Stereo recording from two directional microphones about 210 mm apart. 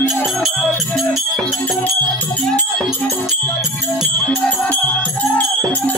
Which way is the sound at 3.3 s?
Centre (ahead or behind).